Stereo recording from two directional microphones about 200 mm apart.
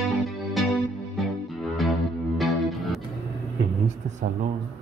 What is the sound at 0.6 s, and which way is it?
Music, centre (ahead or behind).